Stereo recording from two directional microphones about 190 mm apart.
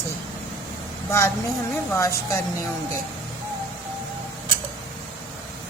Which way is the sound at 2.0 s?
15° left (ahead or behind).